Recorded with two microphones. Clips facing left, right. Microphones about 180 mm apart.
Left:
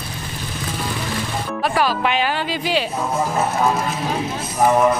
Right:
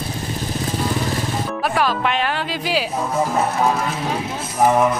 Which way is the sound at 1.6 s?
Centre (ahead or behind).